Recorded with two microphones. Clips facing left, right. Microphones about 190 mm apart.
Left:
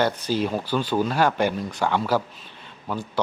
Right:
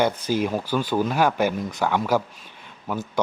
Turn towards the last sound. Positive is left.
turn(degrees=-10)  # may be behind; listen again after turning